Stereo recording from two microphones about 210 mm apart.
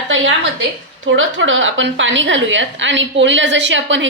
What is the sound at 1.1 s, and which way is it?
A woman's voice, 65° right (ahead or behind).